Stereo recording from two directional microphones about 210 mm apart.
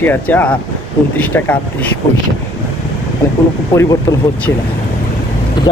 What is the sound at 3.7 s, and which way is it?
Speech, 15° left (ahead or behind).